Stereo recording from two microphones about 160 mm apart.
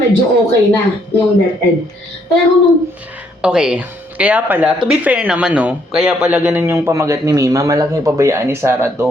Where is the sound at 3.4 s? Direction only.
5° right (ahead or behind).